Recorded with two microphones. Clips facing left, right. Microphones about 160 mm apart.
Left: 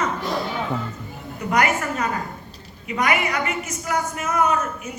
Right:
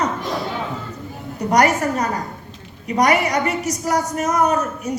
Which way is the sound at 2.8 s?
40° right (ahead or behind).